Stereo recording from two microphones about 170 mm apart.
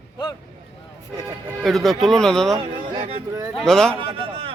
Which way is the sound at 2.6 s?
25° right (ahead or behind).